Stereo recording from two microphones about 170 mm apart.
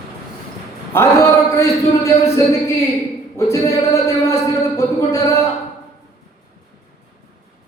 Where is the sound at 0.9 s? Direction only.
15° left (ahead or behind).